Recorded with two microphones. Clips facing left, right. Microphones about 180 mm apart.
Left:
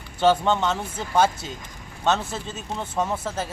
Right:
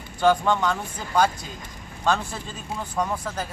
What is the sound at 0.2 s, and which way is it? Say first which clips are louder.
Speech: left 1 dB; 25° left (ahead or behind).